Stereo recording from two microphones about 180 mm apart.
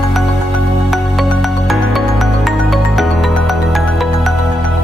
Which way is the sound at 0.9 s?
Centre (ahead or behind).